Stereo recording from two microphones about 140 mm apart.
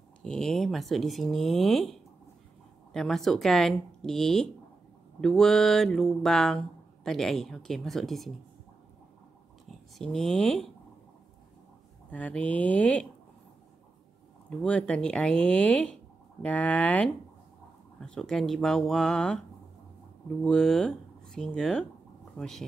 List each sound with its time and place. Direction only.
0.2 s speech: 5° left (ahead or behind)
9.9 s speech: 5° left (ahead or behind)
12.1 s speech: 10° left (ahead or behind)
14.6 s speech: 5° left (ahead or behind)
20.4 s speech: 5° left (ahead or behind)